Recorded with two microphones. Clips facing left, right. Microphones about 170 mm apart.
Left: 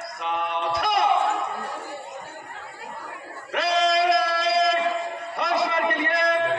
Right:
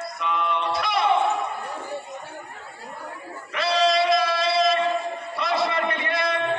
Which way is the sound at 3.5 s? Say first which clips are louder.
Even; 55° left (ahead or behind).